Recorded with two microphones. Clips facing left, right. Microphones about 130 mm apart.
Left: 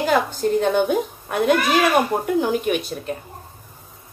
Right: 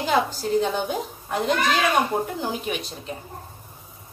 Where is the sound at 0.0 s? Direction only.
55° left (ahead or behind).